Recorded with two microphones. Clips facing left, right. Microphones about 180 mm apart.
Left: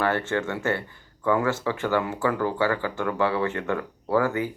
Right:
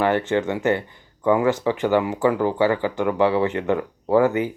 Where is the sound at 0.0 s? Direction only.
15° right (ahead or behind).